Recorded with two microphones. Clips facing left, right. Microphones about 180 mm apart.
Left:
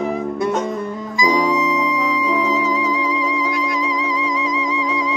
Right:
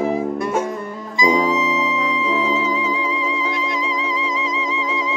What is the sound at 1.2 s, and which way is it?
Music, 25° right (ahead or behind).